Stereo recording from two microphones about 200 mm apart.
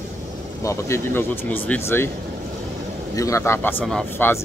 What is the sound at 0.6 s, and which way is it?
Speech, 15° left (ahead or behind).